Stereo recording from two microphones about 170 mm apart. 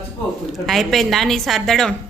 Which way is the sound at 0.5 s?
Centre (ahead or behind).